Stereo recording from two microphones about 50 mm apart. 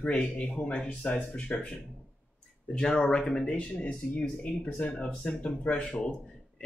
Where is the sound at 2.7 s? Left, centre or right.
Centre.